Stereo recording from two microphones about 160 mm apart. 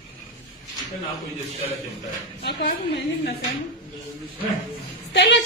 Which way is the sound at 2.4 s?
90° left.